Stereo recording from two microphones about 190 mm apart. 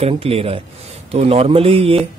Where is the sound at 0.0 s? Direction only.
30° right (ahead or behind).